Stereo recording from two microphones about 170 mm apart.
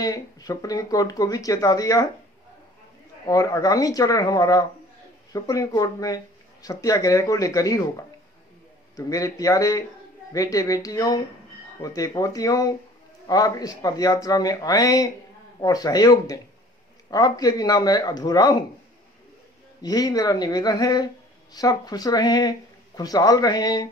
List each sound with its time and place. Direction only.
0.0 s speech: 20° left (ahead or behind)
3.3 s speech: 20° left (ahead or behind)
19.8 s speech: 20° left (ahead or behind)